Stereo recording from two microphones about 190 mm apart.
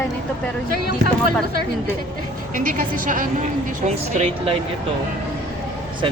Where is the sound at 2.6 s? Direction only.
45° right (ahead or behind).